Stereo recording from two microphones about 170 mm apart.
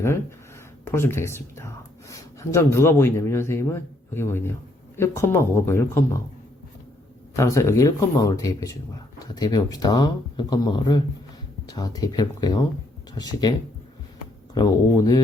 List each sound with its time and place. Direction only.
0.9 s speech: 15° left (ahead or behind)
7.3 s speech: 20° left (ahead or behind)
14.5 s speech: 20° left (ahead or behind)